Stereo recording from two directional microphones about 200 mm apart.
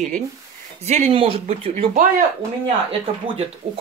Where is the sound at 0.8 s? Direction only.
35° right (ahead or behind).